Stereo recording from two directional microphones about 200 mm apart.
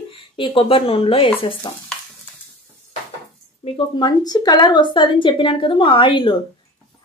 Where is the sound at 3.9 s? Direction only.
20° left (ahead or behind).